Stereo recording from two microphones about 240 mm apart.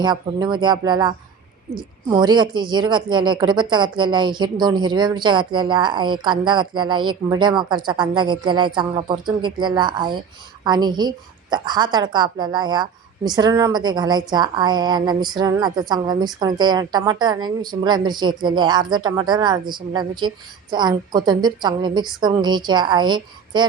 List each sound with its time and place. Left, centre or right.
0.0 s a woman's voice: centre